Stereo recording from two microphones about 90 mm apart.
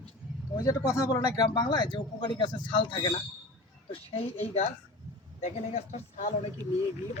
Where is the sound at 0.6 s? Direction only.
40° left (ahead or behind); by 3.1 s 55° left (ahead or behind).